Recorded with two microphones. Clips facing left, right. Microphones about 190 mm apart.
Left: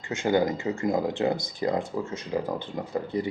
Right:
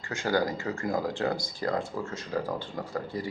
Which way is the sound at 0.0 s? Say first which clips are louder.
Left 4 dB; 20° left (ahead or behind).